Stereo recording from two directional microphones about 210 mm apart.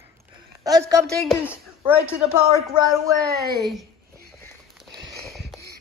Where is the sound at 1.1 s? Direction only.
Centre (ahead or behind).